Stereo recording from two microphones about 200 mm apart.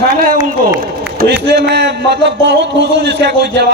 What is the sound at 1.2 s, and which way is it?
A man's voice, 55° right (ahead or behind).